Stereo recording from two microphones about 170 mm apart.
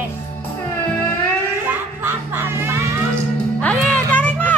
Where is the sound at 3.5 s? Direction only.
10° left (ahead or behind).